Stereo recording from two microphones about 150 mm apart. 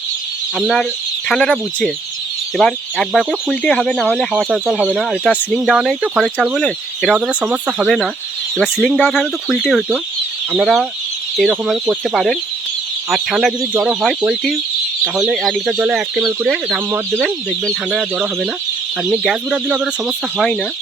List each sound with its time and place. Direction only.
0.5 s speech: centre (ahead or behind)
17.9 s speech: centre (ahead or behind)